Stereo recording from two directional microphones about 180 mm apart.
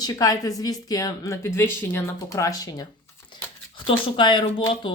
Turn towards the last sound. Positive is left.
turn(degrees=25)  # may be behind; listen again after turning